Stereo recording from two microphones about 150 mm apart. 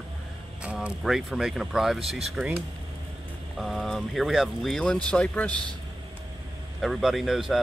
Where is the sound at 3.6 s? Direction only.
Centre (ahead or behind).